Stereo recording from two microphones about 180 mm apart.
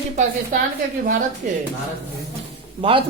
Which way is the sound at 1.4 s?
45° right (ahead or behind).